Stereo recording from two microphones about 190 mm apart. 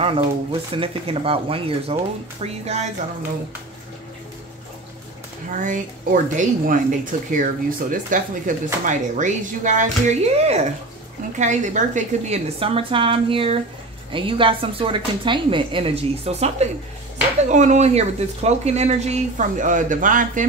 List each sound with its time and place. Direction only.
0.0 s a woman's voice: 30° right (ahead or behind)
5.5 s a woman's voice: 45° right (ahead or behind)